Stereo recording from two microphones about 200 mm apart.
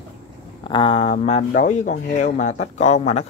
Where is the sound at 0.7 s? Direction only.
25° left (ahead or behind).